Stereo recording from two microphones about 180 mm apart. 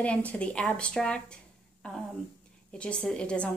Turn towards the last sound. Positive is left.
turn(degrees=5)  # may be behind; listen again after turning